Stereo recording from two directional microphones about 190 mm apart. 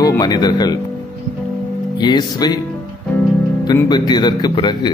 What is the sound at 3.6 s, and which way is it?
Speech, 20° left (ahead or behind).